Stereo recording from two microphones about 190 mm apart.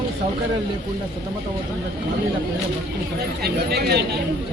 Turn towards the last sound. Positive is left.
turn(degrees=-55)  # may be behind; listen again after turning